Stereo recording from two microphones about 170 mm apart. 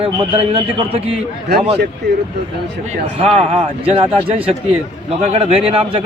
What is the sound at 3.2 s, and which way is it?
A man's voice, 35° right (ahead or behind).